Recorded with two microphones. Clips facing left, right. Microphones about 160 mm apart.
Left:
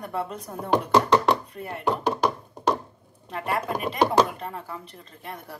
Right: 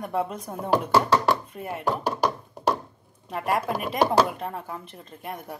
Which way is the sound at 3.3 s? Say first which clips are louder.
Right 2 dB; 5° right (ahead or behind).